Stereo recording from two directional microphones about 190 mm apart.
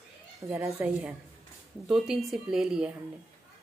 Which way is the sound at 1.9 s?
Centre (ahead or behind).